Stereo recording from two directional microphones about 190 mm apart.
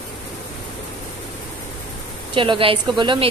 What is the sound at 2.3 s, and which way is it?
Speech, 25° right (ahead or behind).